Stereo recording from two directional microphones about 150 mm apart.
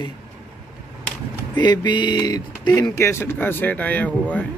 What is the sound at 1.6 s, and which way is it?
Speech, 30° left (ahead or behind).